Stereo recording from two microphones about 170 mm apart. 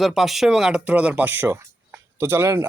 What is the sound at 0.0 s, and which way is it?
A man's voice, centre (ahead or behind).